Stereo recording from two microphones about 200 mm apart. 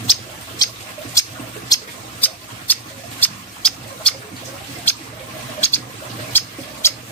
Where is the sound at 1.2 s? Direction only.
15° left (ahead or behind).